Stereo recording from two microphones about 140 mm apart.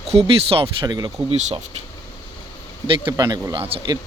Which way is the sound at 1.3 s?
45° right (ahead or behind).